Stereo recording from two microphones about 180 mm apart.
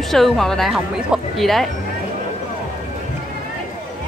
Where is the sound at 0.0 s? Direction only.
Centre (ahead or behind).